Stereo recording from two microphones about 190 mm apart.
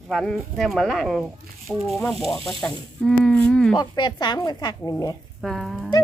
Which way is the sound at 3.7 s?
20° left (ahead or behind).